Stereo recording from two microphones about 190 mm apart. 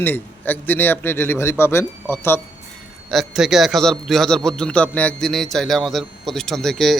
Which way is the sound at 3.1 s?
Centre (ahead or behind).